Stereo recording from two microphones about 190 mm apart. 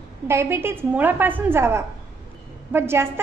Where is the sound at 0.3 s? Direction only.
15° right (ahead or behind).